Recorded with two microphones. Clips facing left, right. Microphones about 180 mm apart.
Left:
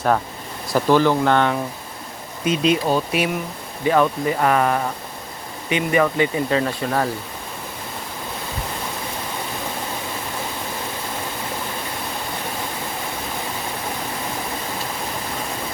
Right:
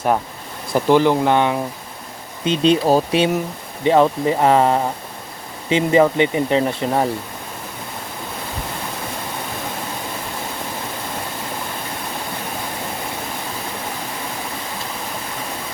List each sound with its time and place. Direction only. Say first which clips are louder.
0.7 s speech: right 2 dB; 15° right (ahead or behind)
2.4 s speech: right 3 dB; 30° right (ahead or behind)